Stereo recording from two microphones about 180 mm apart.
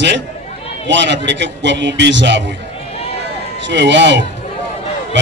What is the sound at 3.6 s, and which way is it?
Speech, 80° right.